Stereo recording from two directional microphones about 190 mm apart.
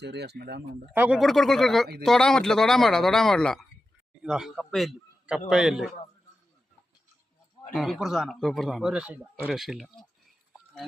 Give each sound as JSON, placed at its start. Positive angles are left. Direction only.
{"t": 0.0, "sound": "speech", "side_deg": -60}
{"t": 0.9, "sound": "speech", "side_deg": -10}
{"t": 1.2, "sound": "a man's voice", "side_deg": 0}
{"t": 7.7, "sound": "a man's voice", "side_deg": 0}